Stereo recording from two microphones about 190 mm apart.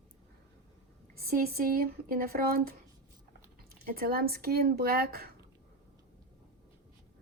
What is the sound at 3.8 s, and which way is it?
A woman's voice, 50° right (ahead or behind).